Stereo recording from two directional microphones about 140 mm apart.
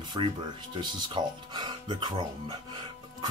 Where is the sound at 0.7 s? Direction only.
30° right (ahead or behind).